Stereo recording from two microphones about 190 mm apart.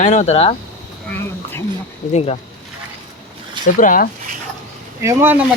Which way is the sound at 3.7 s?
45° left (ahead or behind).